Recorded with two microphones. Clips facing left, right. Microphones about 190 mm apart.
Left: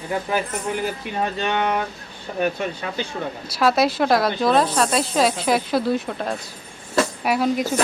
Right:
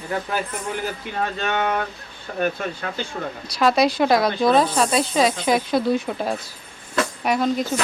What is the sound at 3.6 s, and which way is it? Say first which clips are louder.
Speech: right 1 dB; 5° left (ahead or behind).